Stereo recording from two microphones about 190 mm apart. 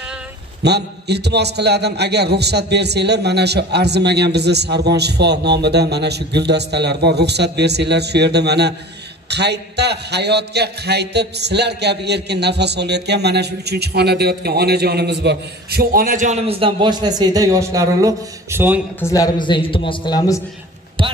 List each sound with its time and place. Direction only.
0.7 s a man's voice: 60° right (ahead or behind); by 18.8 s 10° right (ahead or behind)
18.9 s a man's voice: 15° left (ahead or behind)